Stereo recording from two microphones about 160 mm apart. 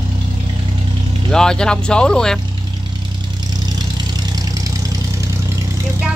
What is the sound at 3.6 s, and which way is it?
Vehicle, 25° right (ahead or behind).